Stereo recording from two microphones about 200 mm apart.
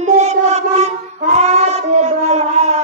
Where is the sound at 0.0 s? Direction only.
35° right (ahead or behind).